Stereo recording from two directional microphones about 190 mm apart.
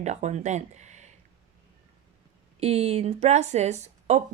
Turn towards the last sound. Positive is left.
turn(degrees=-35)  # may be behind; listen again after turning